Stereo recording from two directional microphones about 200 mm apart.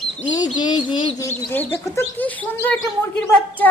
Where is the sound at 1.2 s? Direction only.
10° left (ahead or behind).